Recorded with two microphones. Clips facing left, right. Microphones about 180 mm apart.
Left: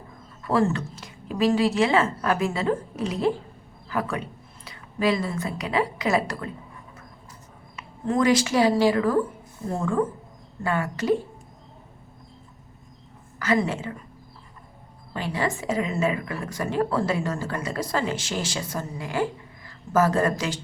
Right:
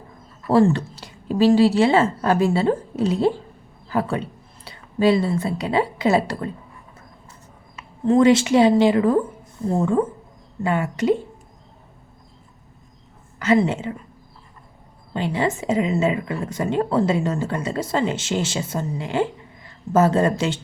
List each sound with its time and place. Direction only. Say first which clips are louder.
0.4 s a woman's voice: right 6 dB; 30° right (ahead or behind)
8.0 s a woman's voice: right 6 dB; 25° right (ahead or behind)
13.4 s a woman's voice: right 5 dB; 25° right (ahead or behind)
15.1 s a woman's voice: right 5 dB; 25° right (ahead or behind)